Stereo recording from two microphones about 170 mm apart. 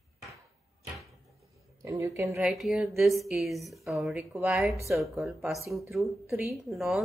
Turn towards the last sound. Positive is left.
turn(degrees=0)  # may be behind; listen again after turning